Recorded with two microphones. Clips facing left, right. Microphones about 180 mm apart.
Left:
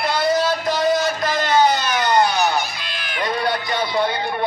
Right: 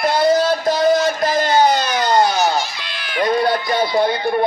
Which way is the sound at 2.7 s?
50° left (ahead or behind).